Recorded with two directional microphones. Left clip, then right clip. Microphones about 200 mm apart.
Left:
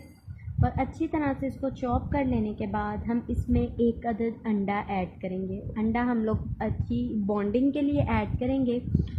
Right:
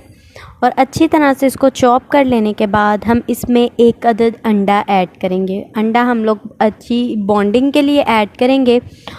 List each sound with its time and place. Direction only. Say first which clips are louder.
0.6 s speech: right 18 dB; 55° right (ahead or behind)